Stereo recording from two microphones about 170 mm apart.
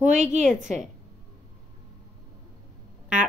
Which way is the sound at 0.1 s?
45° right (ahead or behind).